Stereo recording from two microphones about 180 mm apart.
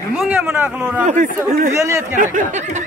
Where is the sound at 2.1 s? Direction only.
45° right (ahead or behind).